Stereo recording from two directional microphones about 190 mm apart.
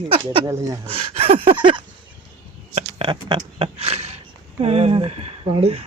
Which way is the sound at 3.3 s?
30° right (ahead or behind).